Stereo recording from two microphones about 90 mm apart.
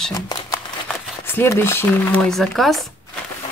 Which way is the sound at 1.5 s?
25° left (ahead or behind).